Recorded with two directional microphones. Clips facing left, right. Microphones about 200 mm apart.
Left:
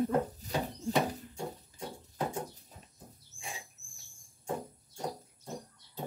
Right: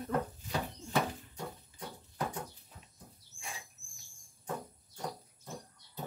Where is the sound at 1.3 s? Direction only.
25° left (ahead or behind).